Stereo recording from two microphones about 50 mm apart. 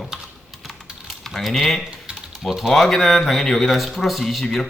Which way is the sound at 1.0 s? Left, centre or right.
Centre.